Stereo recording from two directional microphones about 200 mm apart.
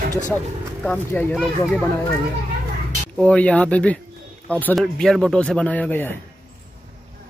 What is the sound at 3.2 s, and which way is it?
Speech, 5° left (ahead or behind).